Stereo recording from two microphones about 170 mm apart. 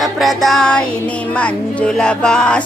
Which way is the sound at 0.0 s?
Centre (ahead or behind).